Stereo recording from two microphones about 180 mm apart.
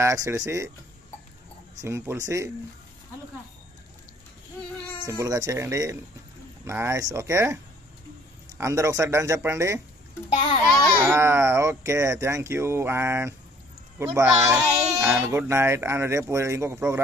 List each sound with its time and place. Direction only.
0.0 s speech: 15° right (ahead or behind)
1.9 s speech: 15° right (ahead or behind)
5.0 s speech: 20° right (ahead or behind)
8.5 s speech: 15° right (ahead or behind)
11.0 s speech: 15° right (ahead or behind)